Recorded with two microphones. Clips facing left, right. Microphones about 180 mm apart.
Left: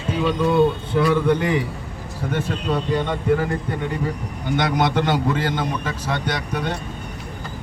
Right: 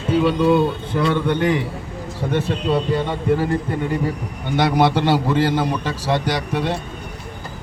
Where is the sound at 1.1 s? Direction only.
Centre (ahead or behind).